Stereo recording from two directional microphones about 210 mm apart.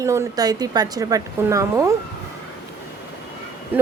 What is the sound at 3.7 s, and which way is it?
Speech, 10° right (ahead or behind).